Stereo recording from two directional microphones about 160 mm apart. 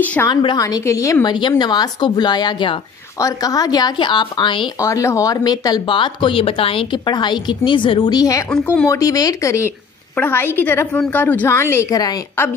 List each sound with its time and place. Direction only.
0.0 s a woman's voice: 10° left (ahead or behind)
0.3 s speech: 30° left (ahead or behind)
4.7 s speech: 20° left (ahead or behind)
8.5 s a woman's voice: 5° left (ahead or behind)
8.8 s a woman's voice: 20° left (ahead or behind)